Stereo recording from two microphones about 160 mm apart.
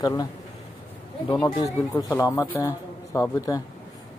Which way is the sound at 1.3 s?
25° left (ahead or behind).